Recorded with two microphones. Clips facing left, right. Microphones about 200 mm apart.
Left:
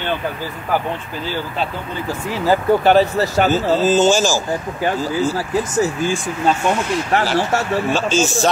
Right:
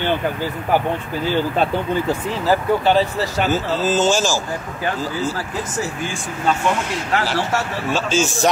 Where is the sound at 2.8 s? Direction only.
50° left (ahead or behind).